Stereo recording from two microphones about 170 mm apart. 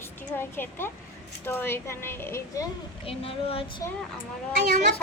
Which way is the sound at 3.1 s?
35° left (ahead or behind).